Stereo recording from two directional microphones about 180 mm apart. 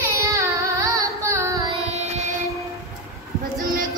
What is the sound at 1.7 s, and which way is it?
Child singing, 35° right (ahead or behind).